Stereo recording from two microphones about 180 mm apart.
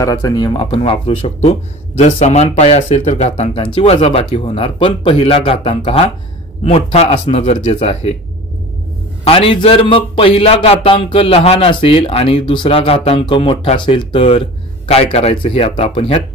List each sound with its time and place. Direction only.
0.0 s speech: 20° left (ahead or behind); by 8.2 s 35° left (ahead or behind)
9.2 s speech: 30° left (ahead or behind)